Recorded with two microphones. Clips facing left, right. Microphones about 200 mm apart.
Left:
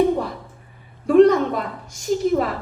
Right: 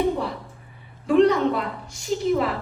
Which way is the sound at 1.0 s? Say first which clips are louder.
Left 4 dB; 45° left (ahead or behind).